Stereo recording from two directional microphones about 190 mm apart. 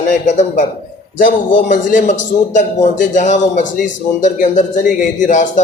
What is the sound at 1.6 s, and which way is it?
A man's voice, 45° left (ahead or behind).